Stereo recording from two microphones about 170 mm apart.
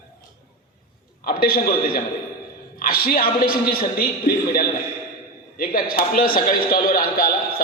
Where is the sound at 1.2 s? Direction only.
60° left (ahead or behind).